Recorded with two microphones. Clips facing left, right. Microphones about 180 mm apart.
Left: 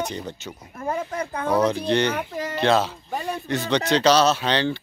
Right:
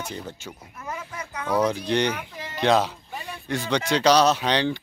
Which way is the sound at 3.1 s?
45° left (ahead or behind).